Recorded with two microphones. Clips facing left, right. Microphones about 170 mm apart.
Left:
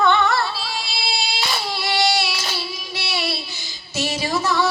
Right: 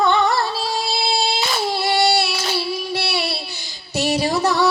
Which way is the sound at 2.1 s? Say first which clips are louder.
Right 4 dB; 55° right (ahead or behind).